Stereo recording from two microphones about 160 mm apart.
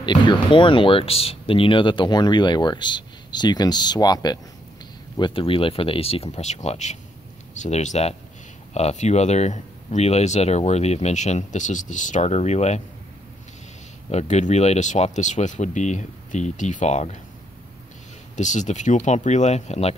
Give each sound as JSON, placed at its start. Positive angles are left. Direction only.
{"t": 0.0, "sound": "speech", "side_deg": 30}
{"t": 14.1, "sound": "speech", "side_deg": 45}
{"t": 18.3, "sound": "speech", "side_deg": 50}